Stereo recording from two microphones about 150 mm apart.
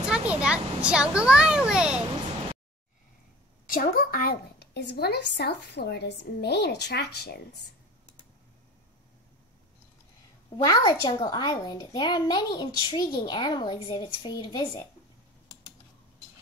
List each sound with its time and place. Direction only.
0.0 s a child's voice: 5° right (ahead or behind)
3.6 s speech: 70° left (ahead or behind); by 7.6 s 90° left
10.6 s a woman's voice: 25° left (ahead or behind)